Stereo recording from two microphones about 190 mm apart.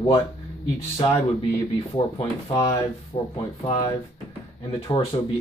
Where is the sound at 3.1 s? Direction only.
30° left (ahead or behind).